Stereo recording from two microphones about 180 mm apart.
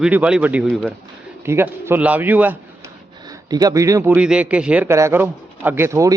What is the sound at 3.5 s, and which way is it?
Speech, 20° right (ahead or behind).